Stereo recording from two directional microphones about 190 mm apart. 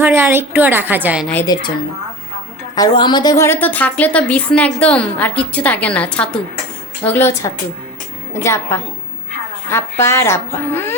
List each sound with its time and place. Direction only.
0.0 s a woman's voice: 10° right (ahead or behind)
1.5 s a woman's voice: 20° left (ahead or behind)
2.7 s a woman's voice: 20° left (ahead or behind)